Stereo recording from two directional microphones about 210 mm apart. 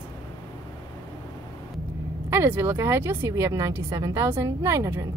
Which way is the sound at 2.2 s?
10° right (ahead or behind).